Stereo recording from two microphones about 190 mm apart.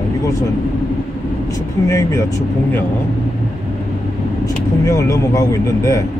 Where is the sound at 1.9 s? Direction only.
15° left (ahead or behind).